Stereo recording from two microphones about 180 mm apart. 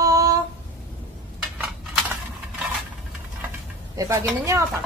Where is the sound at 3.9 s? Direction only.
15° right (ahead or behind).